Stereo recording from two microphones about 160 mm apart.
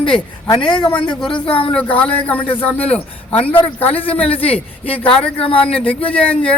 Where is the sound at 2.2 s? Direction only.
10° left (ahead or behind).